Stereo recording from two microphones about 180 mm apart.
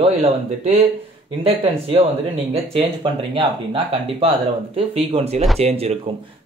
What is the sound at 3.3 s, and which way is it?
Speech, 30° right (ahead or behind).